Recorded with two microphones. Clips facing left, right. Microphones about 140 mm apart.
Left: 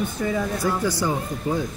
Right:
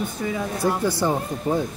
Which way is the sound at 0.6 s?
25° right (ahead or behind).